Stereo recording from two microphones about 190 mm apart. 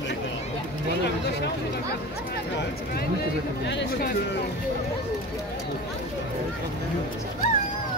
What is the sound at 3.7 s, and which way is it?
Speech, 65° left (ahead or behind).